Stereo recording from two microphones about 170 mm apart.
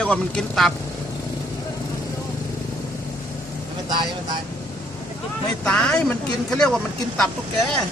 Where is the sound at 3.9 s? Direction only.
25° right (ahead or behind).